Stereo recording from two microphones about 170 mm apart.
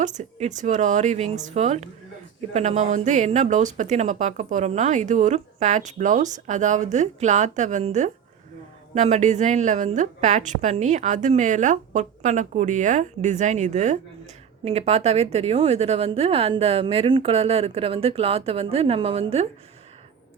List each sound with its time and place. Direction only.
0.0 s a woman's voice: 45° right (ahead or behind)